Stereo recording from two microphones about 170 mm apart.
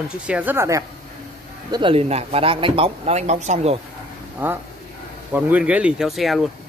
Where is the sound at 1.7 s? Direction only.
30° right (ahead or behind).